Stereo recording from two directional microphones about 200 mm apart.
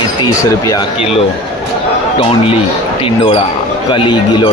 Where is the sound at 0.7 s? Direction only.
20° left (ahead or behind).